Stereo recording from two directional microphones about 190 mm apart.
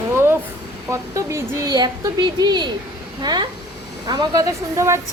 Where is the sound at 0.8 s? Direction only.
15° right (ahead or behind).